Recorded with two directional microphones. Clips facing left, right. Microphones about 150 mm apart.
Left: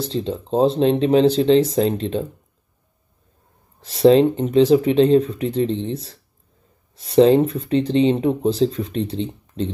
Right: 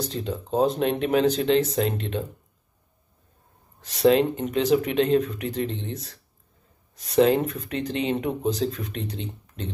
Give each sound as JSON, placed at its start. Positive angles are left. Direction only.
{"t": 0.0, "sound": "speech", "side_deg": 30}
{"t": 3.8, "sound": "speech", "side_deg": 30}